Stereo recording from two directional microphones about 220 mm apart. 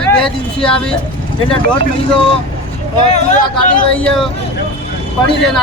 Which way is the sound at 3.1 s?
30° left (ahead or behind).